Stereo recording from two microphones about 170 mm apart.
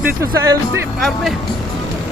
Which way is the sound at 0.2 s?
20° right (ahead or behind).